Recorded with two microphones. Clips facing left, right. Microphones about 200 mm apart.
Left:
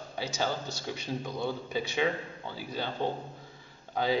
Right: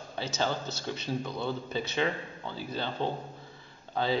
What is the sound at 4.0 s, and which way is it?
Speech, 15° left (ahead or behind).